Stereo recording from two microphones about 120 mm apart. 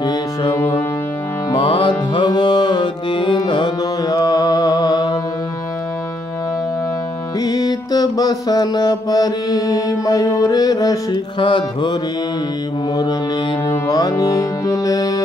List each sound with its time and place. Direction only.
0.0 s music: 35° left (ahead or behind)
1.5 s music: 45° left (ahead or behind)
7.3 s music: 35° left (ahead or behind)
13.7 s music: 35° left (ahead or behind)